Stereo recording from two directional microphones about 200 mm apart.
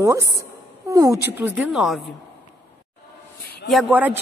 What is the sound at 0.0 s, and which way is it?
A man's voice, 15° right (ahead or behind).